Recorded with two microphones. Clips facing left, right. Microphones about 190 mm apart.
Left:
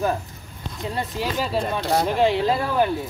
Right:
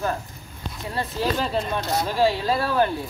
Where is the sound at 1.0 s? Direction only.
15° left (ahead or behind).